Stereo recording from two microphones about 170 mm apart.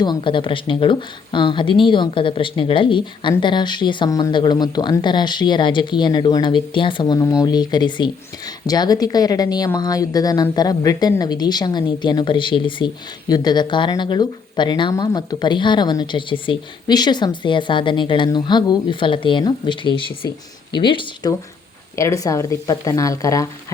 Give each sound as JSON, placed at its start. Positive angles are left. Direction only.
{"t": 0.0, "sound": "speech", "side_deg": 25}
{"t": 21.9, "sound": "speech", "side_deg": 20}